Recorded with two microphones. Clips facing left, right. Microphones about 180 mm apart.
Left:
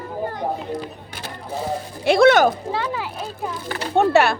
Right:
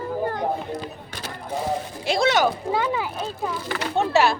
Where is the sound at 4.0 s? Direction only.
60° left (ahead or behind).